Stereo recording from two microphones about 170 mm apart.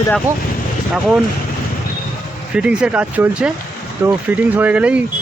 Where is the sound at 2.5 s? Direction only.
5° right (ahead or behind).